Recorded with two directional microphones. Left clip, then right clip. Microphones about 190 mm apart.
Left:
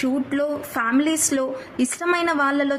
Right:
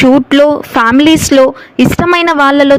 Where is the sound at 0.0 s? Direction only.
45° right (ahead or behind).